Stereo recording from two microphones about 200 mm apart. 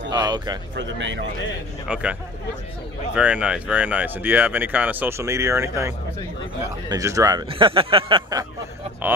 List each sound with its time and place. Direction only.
0.1 s a sound: 20° right (ahead or behind)
0.7 s speech: 65° right (ahead or behind)
1.9 s speech: 5° right (ahead or behind)
3.2 s speech: 5° right (ahead or behind); by 8.5 s 20° right (ahead or behind)